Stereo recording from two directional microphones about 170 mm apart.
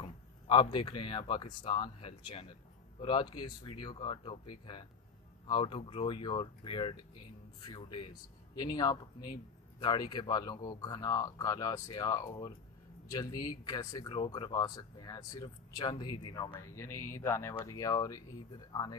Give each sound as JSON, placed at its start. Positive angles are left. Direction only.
{"t": 0.0, "sound": "speech", "side_deg": 30}
{"t": 5.5, "sound": "speech", "side_deg": 30}